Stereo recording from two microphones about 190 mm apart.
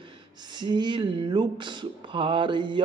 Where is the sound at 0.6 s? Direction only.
25° right (ahead or behind).